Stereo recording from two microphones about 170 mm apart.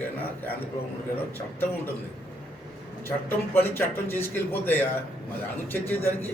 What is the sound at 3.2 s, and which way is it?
A man's voice, 10° left (ahead or behind).